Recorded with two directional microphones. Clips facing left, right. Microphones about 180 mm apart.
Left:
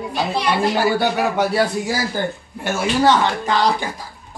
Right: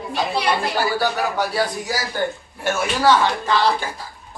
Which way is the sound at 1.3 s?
25° left (ahead or behind).